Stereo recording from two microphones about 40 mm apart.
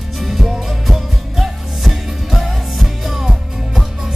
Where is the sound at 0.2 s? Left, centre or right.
Centre.